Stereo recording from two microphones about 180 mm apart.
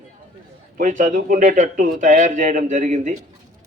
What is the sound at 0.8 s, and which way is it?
A man's voice, 45° right (ahead or behind).